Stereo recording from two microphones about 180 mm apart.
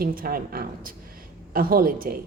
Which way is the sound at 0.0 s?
55° right (ahead or behind).